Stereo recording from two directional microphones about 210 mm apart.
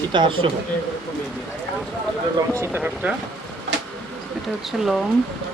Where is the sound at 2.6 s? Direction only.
10° right (ahead or behind).